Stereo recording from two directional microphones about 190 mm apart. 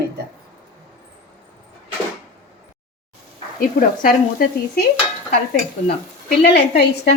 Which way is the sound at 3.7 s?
45° left (ahead or behind).